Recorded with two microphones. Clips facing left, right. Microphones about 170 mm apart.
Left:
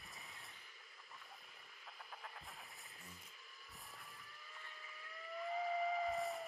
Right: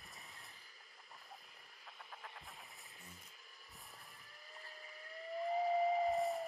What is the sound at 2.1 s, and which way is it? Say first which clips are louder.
Music: even; centre (ahead or behind).